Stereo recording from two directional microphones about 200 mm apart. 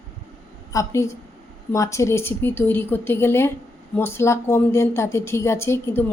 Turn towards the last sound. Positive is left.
turn(degrees=10)  # may be behind; listen again after turning